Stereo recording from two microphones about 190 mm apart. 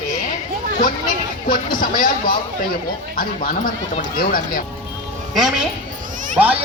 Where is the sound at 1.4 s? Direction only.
45° left (ahead or behind).